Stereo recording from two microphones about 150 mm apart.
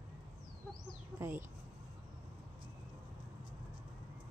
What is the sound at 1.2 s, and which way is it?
Speech, 15° right (ahead or behind).